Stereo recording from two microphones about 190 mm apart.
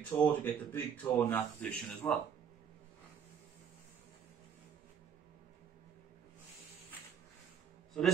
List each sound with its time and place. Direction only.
0.0 s speech: 10° left (ahead or behind)